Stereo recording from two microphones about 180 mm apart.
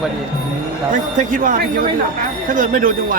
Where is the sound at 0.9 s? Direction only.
45° right (ahead or behind).